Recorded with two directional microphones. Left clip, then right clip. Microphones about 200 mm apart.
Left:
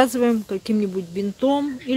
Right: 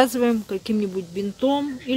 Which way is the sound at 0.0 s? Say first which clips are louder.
Left 1 dB; 15° left (ahead or behind).